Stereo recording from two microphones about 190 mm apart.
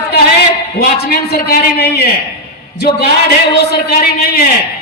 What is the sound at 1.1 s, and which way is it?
Speech, 55° left (ahead or behind).